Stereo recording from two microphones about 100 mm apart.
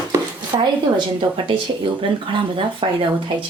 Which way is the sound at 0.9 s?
55° right (ahead or behind).